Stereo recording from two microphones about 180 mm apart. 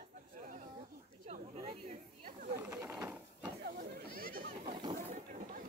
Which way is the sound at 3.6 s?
55° right (ahead or behind).